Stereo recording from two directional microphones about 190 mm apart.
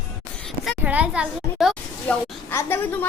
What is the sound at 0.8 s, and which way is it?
Speech, 10° right (ahead or behind).